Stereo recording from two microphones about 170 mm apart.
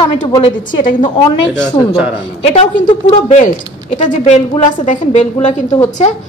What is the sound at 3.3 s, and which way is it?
A man's voice, 45° left (ahead or behind).